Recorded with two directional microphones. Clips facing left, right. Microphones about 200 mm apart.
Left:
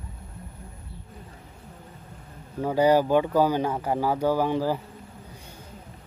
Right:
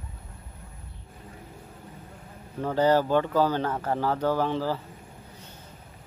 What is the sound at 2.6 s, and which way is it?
Speech, 10° left (ahead or behind).